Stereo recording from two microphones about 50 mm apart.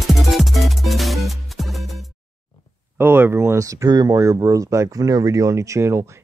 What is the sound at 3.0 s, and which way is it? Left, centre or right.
Speech, right.